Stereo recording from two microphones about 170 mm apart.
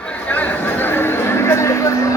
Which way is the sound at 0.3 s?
10° left (ahead or behind).